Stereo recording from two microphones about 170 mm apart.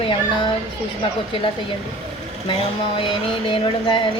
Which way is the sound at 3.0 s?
30° left (ahead or behind).